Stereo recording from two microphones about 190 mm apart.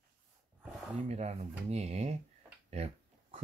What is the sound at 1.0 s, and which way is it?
Speech, 35° right (ahead or behind).